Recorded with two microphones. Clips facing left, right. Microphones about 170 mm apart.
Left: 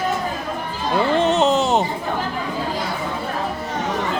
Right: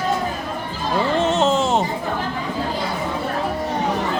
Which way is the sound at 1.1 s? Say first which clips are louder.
Left 1 dB; centre (ahead or behind).